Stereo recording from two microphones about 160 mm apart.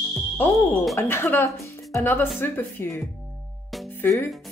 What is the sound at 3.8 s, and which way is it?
Music, 15° left (ahead or behind).